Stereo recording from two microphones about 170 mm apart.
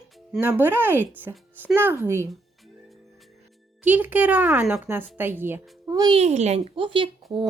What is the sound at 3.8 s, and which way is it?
A woman's voice, 10° right (ahead or behind).